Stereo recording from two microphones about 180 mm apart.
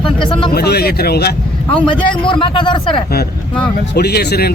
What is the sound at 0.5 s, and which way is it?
Speech, 60° left (ahead or behind).